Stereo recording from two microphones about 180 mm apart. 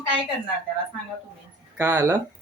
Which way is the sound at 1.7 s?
15° right (ahead or behind).